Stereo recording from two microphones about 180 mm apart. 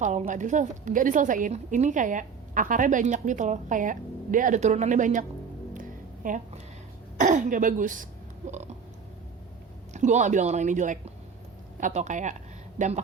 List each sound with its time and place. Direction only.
0.0 s a woman's voice: 40° right (ahead or behind)
6.2 s a woman's voice: 45° right (ahead or behind)
9.9 s a woman's voice: 40° right (ahead or behind)